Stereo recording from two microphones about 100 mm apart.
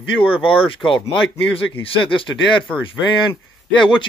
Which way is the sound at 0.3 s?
65° left (ahead or behind).